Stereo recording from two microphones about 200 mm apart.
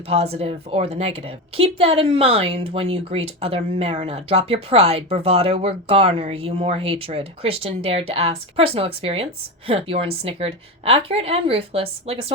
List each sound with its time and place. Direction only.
0.1 s speech: 30° right (ahead or behind)